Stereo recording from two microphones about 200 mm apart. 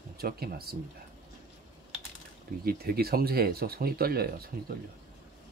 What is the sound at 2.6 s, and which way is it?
Speech, 50° right (ahead or behind).